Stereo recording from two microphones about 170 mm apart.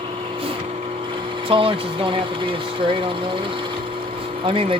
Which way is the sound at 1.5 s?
30° right (ahead or behind).